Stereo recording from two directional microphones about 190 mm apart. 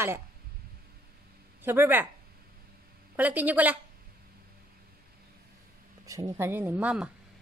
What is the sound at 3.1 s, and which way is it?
Speech, 10° right (ahead or behind).